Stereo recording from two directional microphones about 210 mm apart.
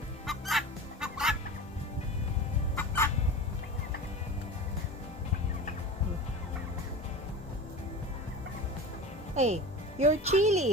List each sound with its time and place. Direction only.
0.3 s fowl: centre (ahead or behind)
2.7 s fowl: 10° left (ahead or behind)
9.3 s speech: 35° right (ahead or behind)